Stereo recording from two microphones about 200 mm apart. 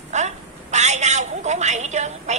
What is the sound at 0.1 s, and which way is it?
A woman's voice, 35° right (ahead or behind).